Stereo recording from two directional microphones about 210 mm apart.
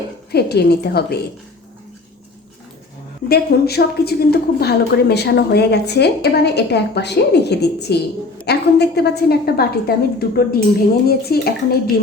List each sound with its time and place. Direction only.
0.3 s a woman's voice: 50° left (ahead or behind)
3.2 s a woman's voice: 50° left (ahead or behind)